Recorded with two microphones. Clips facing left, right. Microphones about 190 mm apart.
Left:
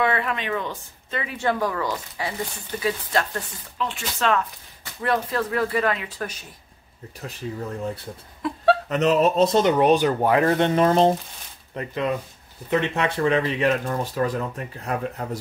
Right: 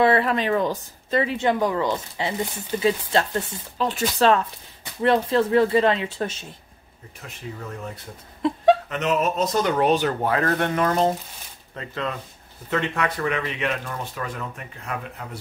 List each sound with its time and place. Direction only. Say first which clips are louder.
0.0 s speech: right 5 dB; 35° right (ahead or behind)
8.4 s speech: right 5 dB; 25° right (ahead or behind)
8.8 s speech: left 4 dB; 35° left (ahead or behind)